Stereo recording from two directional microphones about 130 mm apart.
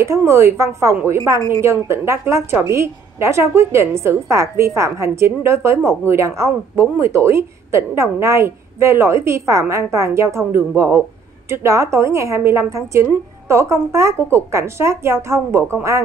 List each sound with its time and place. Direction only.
0.0 s speech: 20° right (ahead or behind)